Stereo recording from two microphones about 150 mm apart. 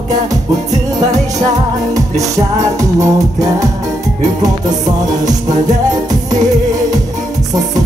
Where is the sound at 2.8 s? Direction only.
20° right (ahead or behind).